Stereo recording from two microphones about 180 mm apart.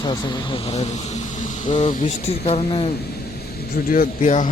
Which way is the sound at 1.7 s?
40° left (ahead or behind).